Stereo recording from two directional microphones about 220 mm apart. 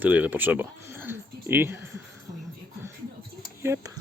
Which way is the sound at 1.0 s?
10° right (ahead or behind).